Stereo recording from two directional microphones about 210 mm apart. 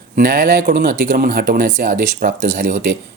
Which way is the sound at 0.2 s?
50° right (ahead or behind).